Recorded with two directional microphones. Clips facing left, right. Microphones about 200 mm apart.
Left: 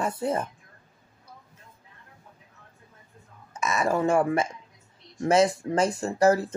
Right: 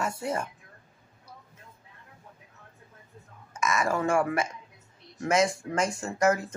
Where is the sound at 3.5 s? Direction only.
35° left (ahead or behind).